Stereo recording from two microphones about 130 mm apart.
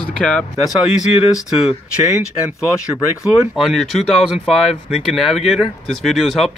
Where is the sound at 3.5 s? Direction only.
Centre (ahead or behind).